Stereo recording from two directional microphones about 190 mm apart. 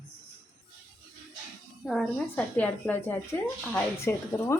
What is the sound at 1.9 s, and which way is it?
Speech, centre (ahead or behind).